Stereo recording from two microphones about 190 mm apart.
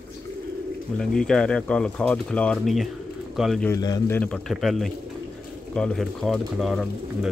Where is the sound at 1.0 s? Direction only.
5° left (ahead or behind).